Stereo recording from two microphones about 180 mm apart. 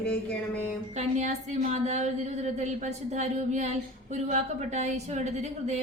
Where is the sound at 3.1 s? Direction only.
40° right (ahead or behind).